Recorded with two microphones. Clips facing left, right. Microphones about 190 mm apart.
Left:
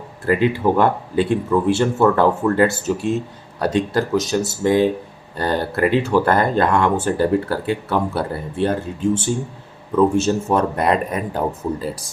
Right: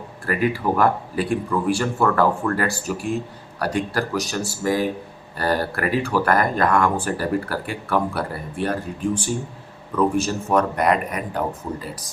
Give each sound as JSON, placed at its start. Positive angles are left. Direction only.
{"t": 0.3, "sound": "speech", "side_deg": 25}